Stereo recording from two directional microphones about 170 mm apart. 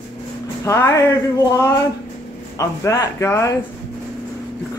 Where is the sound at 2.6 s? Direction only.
20° left (ahead or behind).